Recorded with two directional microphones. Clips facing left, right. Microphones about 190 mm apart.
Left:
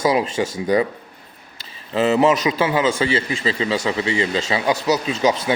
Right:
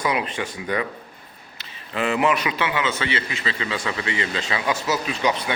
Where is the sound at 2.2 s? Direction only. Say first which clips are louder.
Left 5 dB; 35° left (ahead or behind).